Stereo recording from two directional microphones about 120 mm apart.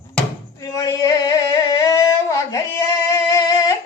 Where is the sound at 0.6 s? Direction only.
30° left (ahead or behind).